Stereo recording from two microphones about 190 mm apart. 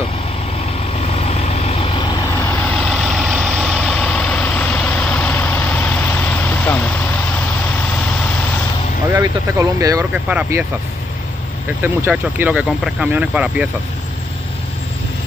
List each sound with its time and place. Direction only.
1.0 s vehicle: 35° left (ahead or behind); by 2.7 s 15° left (ahead or behind)
2.8 s vehicle: centre (ahead or behind)
9.1 s speech: 15° right (ahead or behind)
11.8 s speech: 10° right (ahead or behind)